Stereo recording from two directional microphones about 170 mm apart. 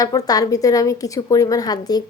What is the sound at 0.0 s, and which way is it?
Speech, 20° left (ahead or behind).